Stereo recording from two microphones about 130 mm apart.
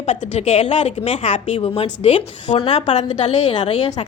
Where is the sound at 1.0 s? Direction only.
45° left (ahead or behind).